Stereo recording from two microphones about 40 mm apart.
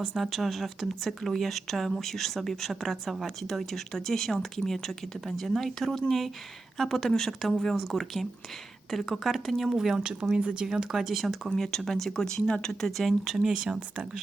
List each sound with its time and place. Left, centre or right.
0.2 s speech: centre
10.0 s speech: right
10.7 s speech: centre
11.5 s speech: centre
13.4 s speech: centre